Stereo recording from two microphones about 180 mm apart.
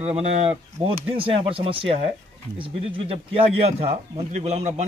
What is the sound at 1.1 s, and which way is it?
Speech, 30° right (ahead or behind).